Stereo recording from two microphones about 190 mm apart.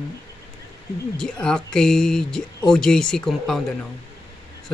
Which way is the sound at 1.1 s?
5° left (ahead or behind).